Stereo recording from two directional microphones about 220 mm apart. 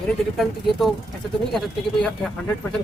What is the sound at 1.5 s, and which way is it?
Speech, centre (ahead or behind).